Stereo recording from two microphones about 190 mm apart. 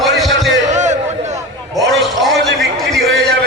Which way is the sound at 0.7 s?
40° right (ahead or behind).